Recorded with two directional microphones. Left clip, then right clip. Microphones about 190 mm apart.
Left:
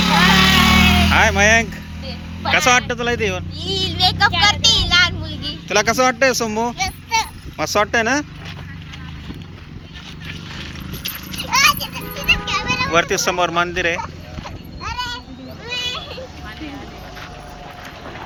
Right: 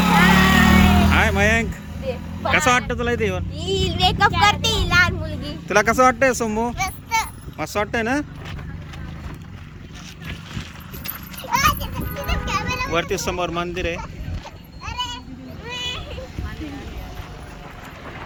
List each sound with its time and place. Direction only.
0.0 s vehicle: 50° right (ahead or behind)
1.1 s music: 10° right (ahead or behind)
2.5 s speech: 15° right (ahead or behind)
3.6 s speech: 55° right (ahead or behind)
4.3 s speech: 40° right (ahead or behind); by 8.2 s 10° right (ahead or behind)
11.3 s children playing: 45° right (ahead or behind)
12.5 s children playing: 25° right (ahead or behind)
12.9 s speech: 10° right (ahead or behind)
14.9 s a sound: 5° right (ahead or behind)